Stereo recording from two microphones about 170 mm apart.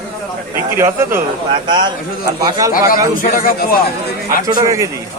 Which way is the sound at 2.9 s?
55° left (ahead or behind).